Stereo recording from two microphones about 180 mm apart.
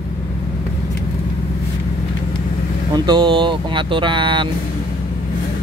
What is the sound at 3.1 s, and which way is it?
Speech, 25° right (ahead or behind).